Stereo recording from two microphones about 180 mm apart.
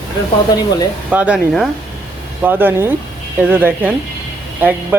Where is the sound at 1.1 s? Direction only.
5° right (ahead or behind).